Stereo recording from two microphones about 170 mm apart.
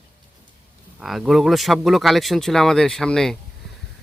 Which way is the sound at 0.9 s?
Centre (ahead or behind).